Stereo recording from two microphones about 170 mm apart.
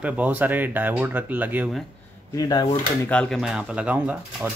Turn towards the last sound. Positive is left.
turn(degrees=-10)  # may be behind; listen again after turning